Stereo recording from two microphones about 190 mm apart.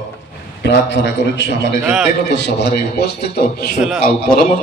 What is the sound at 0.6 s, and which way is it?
A man's voice, 65° left (ahead or behind).